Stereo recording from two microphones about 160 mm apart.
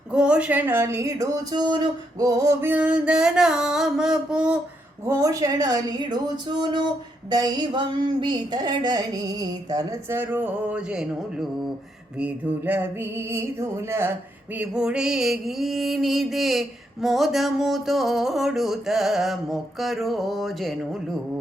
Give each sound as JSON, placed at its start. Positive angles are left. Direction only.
{"t": 0.1, "sound": "speech", "side_deg": -5}
{"t": 5.0, "sound": "a woman's voice", "side_deg": -20}
{"t": 14.5, "sound": "music", "side_deg": -10}